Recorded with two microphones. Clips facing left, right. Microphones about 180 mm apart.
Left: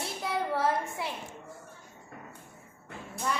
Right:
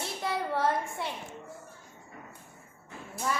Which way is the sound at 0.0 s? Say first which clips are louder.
Even; centre (ahead or behind).